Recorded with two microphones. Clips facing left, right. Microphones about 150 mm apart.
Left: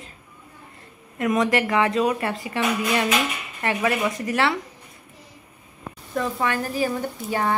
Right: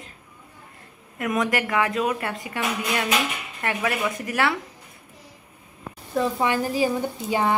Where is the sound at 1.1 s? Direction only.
Centre (ahead or behind).